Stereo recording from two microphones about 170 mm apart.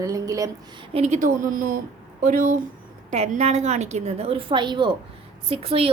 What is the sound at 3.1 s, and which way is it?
A woman's voice, 40° right (ahead or behind).